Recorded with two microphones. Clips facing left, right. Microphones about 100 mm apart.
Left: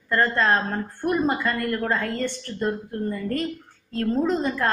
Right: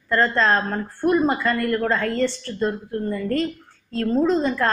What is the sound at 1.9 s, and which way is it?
Speech, 20° left (ahead or behind).